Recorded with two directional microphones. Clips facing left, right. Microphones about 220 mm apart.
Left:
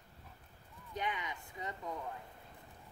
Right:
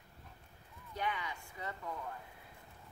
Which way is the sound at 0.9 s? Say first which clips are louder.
Even; 20° left (ahead or behind).